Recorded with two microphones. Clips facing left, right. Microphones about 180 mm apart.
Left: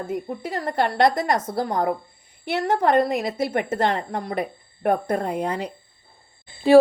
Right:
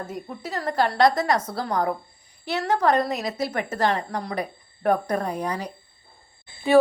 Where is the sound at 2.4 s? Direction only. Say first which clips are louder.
Left 1 dB; 50° left (ahead or behind).